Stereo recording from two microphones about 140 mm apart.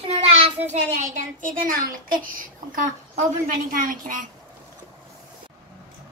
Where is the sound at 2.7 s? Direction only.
70° right (ahead or behind).